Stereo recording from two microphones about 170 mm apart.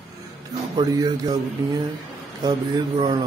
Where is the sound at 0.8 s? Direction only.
20° right (ahead or behind).